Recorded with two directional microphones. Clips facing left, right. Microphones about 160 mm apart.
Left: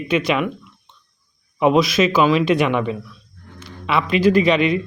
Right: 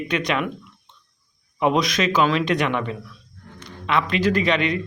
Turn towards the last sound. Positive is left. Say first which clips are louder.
# left 5 dB
turn(degrees=10)  # may be behind; listen again after turning